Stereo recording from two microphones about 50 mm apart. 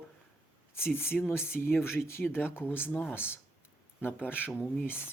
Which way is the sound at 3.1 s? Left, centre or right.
Left.